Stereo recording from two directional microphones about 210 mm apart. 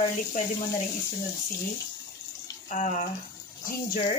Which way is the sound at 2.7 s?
35° left (ahead or behind).